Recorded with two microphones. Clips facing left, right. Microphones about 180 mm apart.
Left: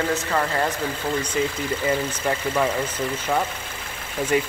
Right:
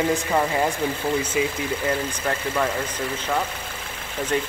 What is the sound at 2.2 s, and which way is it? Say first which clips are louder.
Speech: left 2 dB; 5° left (ahead or behind).